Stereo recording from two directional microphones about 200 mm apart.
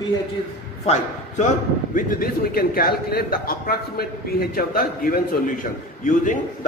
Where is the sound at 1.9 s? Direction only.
45° left (ahead or behind).